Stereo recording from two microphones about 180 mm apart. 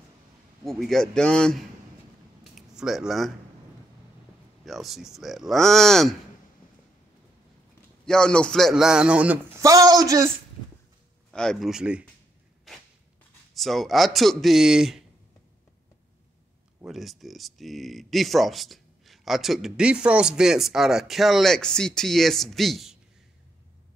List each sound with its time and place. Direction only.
0.7 s speech: centre (ahead or behind)
4.6 s speech: centre (ahead or behind)
8.0 s speech: 5° left (ahead or behind)
9.6 s a man's voice: 20° right (ahead or behind)
11.3 s speech: centre (ahead or behind)
13.6 s speech: centre (ahead or behind)
16.8 s speech: centre (ahead or behind)